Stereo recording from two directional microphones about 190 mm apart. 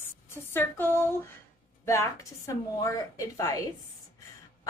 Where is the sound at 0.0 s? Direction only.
10° left (ahead or behind).